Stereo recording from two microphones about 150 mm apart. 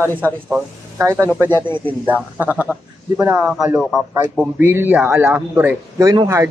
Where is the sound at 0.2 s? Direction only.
15° right (ahead or behind).